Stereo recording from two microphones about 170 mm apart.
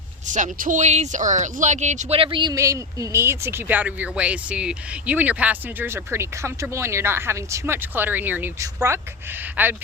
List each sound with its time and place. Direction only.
0.3 s speech: 50° right (ahead or behind); by 9.7 s 10° right (ahead or behind)